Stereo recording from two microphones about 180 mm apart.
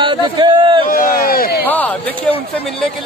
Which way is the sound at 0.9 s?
55° left (ahead or behind).